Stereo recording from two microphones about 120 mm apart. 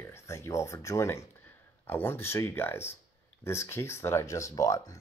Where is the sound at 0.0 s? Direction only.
20° left (ahead or behind).